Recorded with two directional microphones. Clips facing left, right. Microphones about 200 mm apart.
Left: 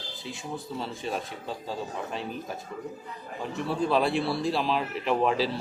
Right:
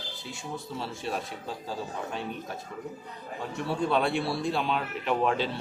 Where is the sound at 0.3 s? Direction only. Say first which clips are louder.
Left 2 dB; centre (ahead or behind).